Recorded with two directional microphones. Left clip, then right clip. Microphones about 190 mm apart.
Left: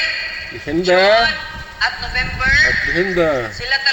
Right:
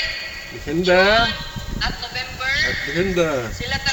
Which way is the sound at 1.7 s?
50° left (ahead or behind).